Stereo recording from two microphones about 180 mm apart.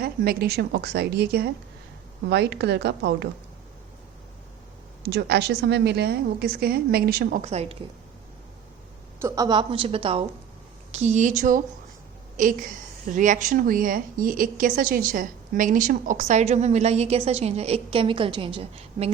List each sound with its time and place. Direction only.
0.0 s a woman's voice: 60° right (ahead or behind)
5.0 s a woman's voice: 65° right (ahead or behind)
7.4 s speech: 35° right (ahead or behind)
9.2 s a woman's voice: 20° right (ahead or behind)